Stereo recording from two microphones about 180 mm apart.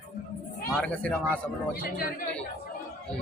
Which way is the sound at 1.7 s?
55° left (ahead or behind).